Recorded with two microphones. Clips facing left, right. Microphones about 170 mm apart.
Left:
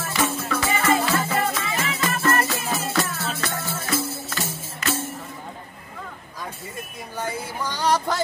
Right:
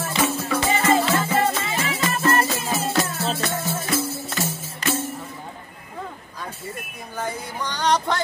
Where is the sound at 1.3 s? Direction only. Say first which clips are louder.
Right 3 dB; 25° right (ahead or behind).